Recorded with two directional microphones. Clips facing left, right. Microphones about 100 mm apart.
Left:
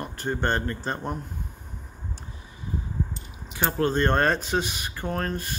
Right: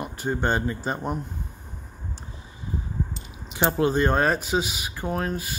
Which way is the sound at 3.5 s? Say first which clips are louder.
Right 4 dB; 20° right (ahead or behind).